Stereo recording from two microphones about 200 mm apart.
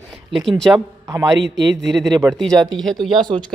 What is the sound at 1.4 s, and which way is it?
Speech, 65° right (ahead or behind).